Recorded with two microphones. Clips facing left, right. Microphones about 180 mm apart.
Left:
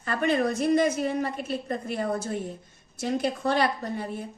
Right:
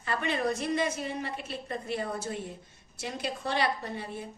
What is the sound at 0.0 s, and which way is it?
A woman's voice, 45° left (ahead or behind).